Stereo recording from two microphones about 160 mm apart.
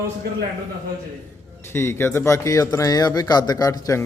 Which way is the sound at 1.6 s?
15° left (ahead or behind).